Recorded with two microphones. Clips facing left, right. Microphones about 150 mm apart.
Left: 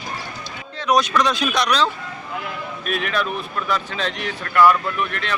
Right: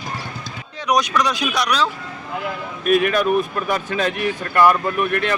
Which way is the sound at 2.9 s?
50° right (ahead or behind).